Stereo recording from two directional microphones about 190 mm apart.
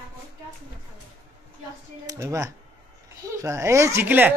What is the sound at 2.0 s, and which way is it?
Speech, 20° right (ahead or behind).